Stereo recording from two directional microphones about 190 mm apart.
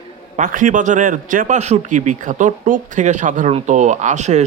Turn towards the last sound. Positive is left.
turn(degrees=-40)  # may be behind; listen again after turning